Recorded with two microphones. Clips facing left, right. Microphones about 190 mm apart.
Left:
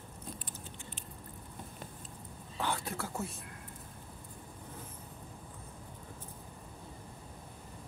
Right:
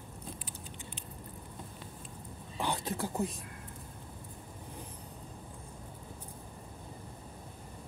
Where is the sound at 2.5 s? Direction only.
15° right (ahead or behind).